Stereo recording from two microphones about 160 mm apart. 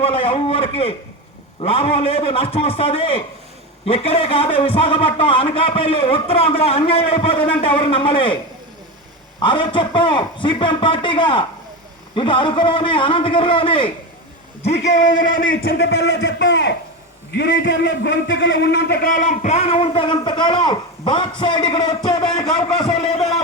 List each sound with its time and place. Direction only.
0.0 s a man's voice: 35° left (ahead or behind)
9.4 s a man's voice: 30° left (ahead or behind)
14.6 s a man's voice: 45° left (ahead or behind); by 22.9 s 25° left (ahead or behind)
22.9 s a sound: 40° left (ahead or behind)